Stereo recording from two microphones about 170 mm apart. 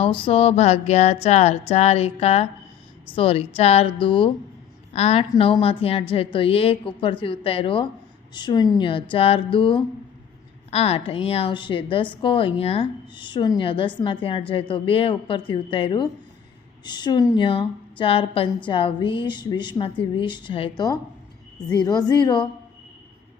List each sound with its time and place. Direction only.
0.0 s a woman's voice: 30° left (ahead or behind)